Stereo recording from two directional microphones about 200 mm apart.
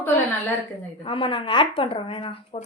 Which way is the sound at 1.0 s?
25° left (ahead or behind).